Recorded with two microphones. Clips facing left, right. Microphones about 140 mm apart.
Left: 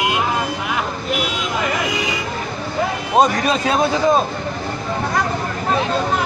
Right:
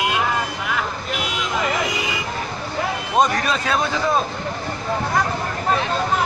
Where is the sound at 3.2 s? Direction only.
30° left (ahead or behind).